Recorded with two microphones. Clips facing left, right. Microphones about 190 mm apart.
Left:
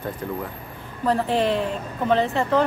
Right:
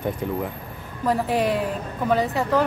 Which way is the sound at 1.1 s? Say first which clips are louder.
Left 1 dB; 10° right (ahead or behind).